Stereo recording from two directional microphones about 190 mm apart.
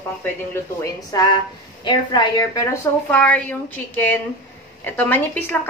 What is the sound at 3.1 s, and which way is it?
A woman's voice, 5° left (ahead or behind).